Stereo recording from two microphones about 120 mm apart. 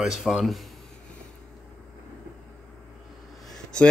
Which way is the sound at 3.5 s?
5° left (ahead or behind).